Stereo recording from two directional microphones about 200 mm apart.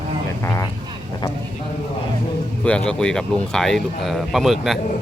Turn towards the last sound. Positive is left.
turn(degrees=0)  # may be behind; listen again after turning